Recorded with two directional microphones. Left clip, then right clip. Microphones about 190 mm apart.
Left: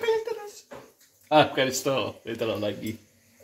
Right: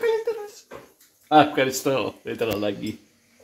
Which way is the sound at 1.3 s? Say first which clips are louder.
Right 3 dB; 25° right (ahead or behind).